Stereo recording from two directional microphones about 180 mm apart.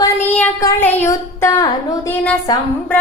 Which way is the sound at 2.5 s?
20° left (ahead or behind).